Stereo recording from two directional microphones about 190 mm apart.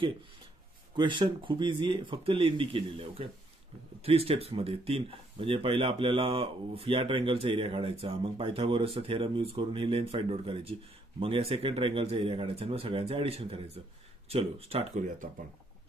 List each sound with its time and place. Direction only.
0.9 s speech: 25° right (ahead or behind); by 15.2 s 40° right (ahead or behind)